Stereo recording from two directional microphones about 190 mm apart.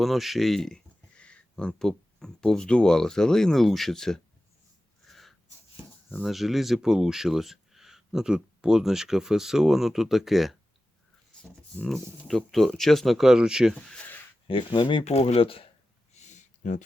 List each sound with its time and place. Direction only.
0.0 s speech: centre (ahead or behind)
5.0 s a sound: centre (ahead or behind)
6.1 s speech: 5° left (ahead or behind)
11.8 s speech: 5° left (ahead or behind)
14.4 s speech: 25° left (ahead or behind)
16.1 s a sound: 40° left (ahead or behind)